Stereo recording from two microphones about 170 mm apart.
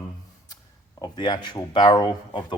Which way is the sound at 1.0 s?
25° left (ahead or behind).